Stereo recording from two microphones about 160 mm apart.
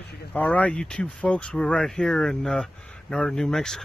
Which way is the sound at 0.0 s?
90° left.